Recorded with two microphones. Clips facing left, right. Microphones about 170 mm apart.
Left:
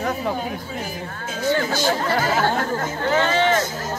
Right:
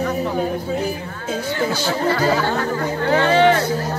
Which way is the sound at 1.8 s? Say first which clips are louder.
Right 1 dB; 50° left (ahead or behind).